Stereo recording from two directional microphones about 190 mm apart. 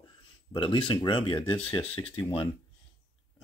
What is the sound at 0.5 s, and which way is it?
Speech, 25° left (ahead or behind).